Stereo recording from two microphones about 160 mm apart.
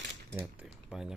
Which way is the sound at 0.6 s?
5° right (ahead or behind).